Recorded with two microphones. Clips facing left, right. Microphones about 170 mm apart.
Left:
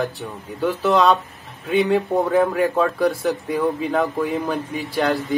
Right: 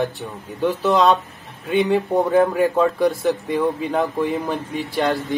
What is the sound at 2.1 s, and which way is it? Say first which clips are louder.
Speech: right 1 dB; 15° right (ahead or behind).